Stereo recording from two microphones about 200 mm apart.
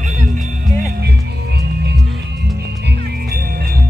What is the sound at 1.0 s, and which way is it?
Music, 55° right (ahead or behind).